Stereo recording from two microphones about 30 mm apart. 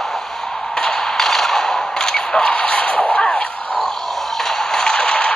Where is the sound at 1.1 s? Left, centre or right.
Centre.